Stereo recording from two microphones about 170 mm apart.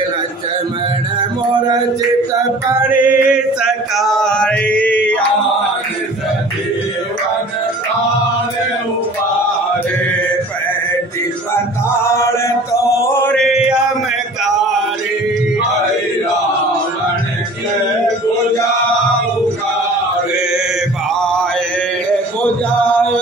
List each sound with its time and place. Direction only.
2.7 s chant: 10° right (ahead or behind); by 5.2 s 10° left (ahead or behind)
11.5 s chant: 15° left (ahead or behind)
13.6 s mantra: 5° right (ahead or behind)